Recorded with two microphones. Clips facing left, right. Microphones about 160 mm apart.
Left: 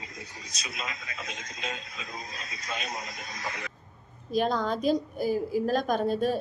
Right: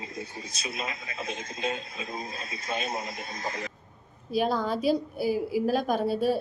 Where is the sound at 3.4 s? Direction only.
45° right (ahead or behind).